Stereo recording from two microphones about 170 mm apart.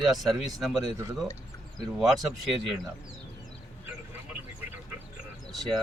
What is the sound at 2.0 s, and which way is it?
Speech, centre (ahead or behind).